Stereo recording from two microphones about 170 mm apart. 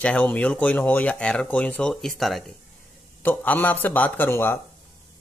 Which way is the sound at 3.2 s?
10° left (ahead or behind).